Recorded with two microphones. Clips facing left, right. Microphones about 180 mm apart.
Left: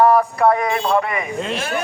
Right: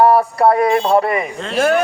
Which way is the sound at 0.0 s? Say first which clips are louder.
Right 2 dB; 30° right (ahead or behind).